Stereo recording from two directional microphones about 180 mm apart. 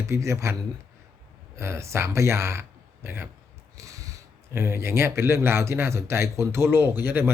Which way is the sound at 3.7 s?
20° right (ahead or behind).